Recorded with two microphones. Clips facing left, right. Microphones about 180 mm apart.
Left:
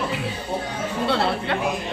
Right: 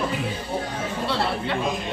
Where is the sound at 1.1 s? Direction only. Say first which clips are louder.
Left 3 dB; 60° left (ahead or behind).